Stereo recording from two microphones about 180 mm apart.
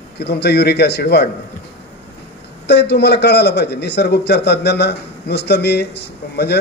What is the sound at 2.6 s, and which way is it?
A man's voice, 70° left (ahead or behind).